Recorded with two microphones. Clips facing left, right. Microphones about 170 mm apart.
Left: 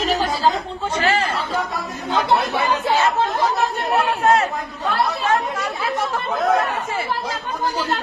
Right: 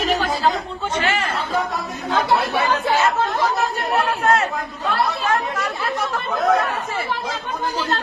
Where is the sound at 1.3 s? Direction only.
Centre (ahead or behind).